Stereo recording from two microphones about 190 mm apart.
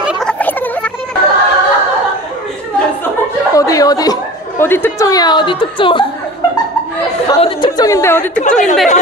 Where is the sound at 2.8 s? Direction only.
15° left (ahead or behind).